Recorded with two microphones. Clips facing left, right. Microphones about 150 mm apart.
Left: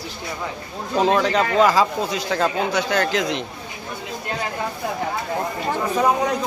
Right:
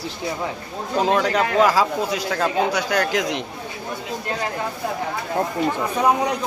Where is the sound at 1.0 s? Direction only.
5° right (ahead or behind).